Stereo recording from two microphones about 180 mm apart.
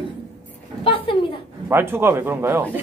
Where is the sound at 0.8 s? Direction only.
30° left (ahead or behind).